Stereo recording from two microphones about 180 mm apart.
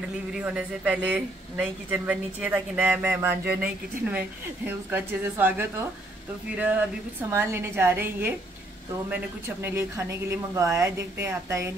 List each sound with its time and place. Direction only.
0.3 s speech: 5° right (ahead or behind)